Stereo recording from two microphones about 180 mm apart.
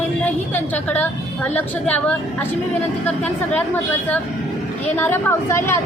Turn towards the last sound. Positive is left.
turn(degrees=15)  # may be behind; listen again after turning